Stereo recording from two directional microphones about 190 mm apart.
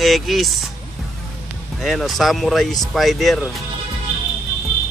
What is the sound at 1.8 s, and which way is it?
Speech, centre (ahead or behind).